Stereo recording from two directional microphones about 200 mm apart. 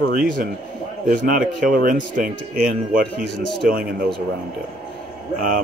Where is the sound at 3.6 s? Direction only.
45° right (ahead or behind).